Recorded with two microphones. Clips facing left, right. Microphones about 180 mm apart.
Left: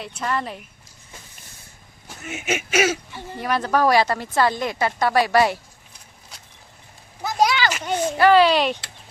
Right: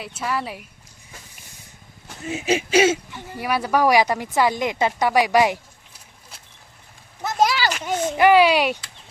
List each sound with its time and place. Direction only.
0.0 s speech: 5° right (ahead or behind)
2.2 s speech: 30° right (ahead or behind)
3.2 s speech: 10° right (ahead or behind)
7.2 s a sound: centre (ahead or behind)
8.1 s speech: 15° right (ahead or behind)